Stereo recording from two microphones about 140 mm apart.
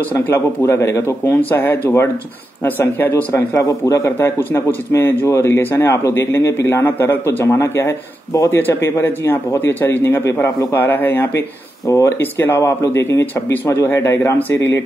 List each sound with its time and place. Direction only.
0.1 s a man's voice: 20° left (ahead or behind)